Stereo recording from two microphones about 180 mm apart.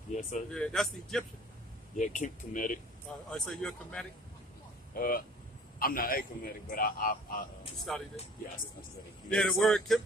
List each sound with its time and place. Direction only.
0.1 s speech: 40° left (ahead or behind)
0.5 s speech: 5° left (ahead or behind)
2.0 s a man's voice: 45° left (ahead or behind)
3.3 s speech: 5° left (ahead or behind)
4.9 s a man's voice: 55° left (ahead or behind)
7.9 s speech: 5° left (ahead or behind)
9.6 s speech: centre (ahead or behind)